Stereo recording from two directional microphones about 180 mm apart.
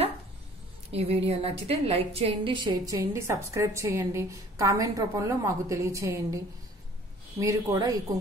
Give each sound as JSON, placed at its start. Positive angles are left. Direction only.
{"t": 0.9, "sound": "a woman's voice", "side_deg": -35}